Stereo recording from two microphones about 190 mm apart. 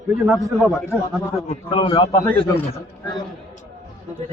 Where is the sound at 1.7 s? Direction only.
25° left (ahead or behind).